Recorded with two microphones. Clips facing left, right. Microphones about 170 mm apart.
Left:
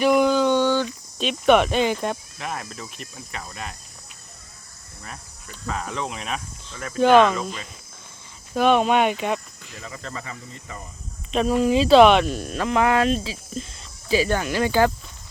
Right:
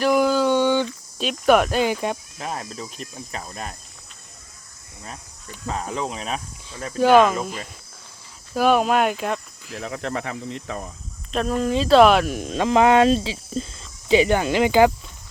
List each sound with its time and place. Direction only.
0.0 s a sound: centre (ahead or behind)
1.2 s speech: centre (ahead or behind)
2.4 s speech: 30° right (ahead or behind)
5.6 s speech: 30° right (ahead or behind)
7.0 s speech: 5° right (ahead or behind)
8.5 s speech: 5° right (ahead or behind)
9.7 s speech: 70° right (ahead or behind)
11.3 s speech: centre (ahead or behind)
12.5 s speech: 25° right (ahead or behind)
14.1 s speech: 20° right (ahead or behind)